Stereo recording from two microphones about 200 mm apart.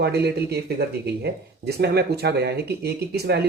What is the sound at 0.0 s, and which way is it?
Speech, 55° right (ahead or behind).